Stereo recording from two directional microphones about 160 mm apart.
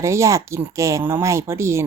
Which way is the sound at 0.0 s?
20° right (ahead or behind).